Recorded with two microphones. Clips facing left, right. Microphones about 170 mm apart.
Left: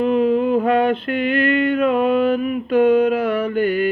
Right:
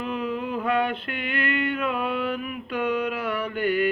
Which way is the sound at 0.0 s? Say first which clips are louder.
Left 12 dB; 35° left (ahead or behind).